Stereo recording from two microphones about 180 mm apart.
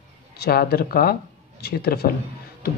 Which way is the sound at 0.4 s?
60° left (ahead or behind).